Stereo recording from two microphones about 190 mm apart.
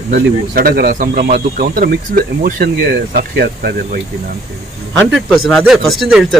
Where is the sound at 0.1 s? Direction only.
50° right (ahead or behind).